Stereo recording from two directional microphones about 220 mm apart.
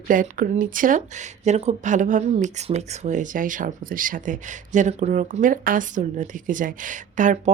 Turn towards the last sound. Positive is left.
turn(degrees=-35)  # may be behind; listen again after turning